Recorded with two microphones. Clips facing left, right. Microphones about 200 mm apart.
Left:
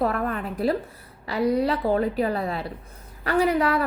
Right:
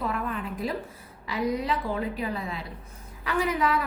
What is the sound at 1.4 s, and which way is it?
Speech, 35° left (ahead or behind).